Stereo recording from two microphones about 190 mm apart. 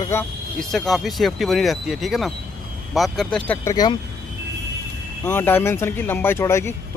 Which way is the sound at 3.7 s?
20° left (ahead or behind).